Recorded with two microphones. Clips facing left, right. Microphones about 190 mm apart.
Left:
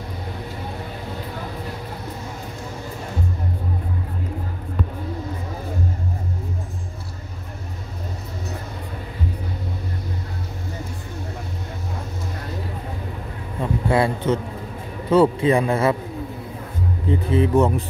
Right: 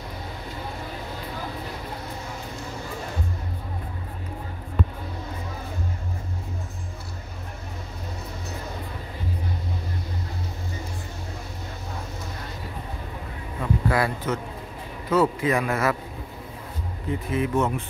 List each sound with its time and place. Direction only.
13.6 s a sound: 25° left (ahead or behind)
15.0 s a man's voice: 30° left (ahead or behind)
17.1 s speech: 30° left (ahead or behind)